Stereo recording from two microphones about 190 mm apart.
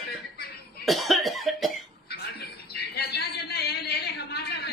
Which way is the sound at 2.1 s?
55° left (ahead or behind).